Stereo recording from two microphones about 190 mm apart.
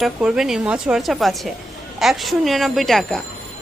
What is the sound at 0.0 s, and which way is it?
A woman's voice, 5° right (ahead or behind).